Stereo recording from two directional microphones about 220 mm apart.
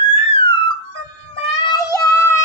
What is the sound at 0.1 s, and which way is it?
Music, 25° left (ahead or behind).